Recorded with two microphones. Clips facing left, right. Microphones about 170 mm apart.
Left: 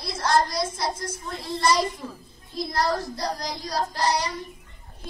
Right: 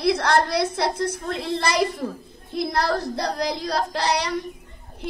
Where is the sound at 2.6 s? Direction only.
65° right (ahead or behind).